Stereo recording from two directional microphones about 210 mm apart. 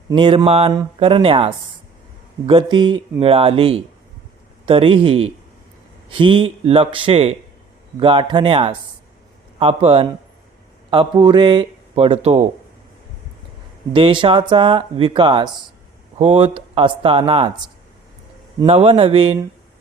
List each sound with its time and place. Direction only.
0.1 s speech: 25° right (ahead or behind)
13.9 s speech: 25° right (ahead or behind)
18.6 s speech: 25° right (ahead or behind)